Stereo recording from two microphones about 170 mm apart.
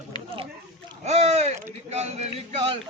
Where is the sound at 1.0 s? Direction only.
40° right (ahead or behind).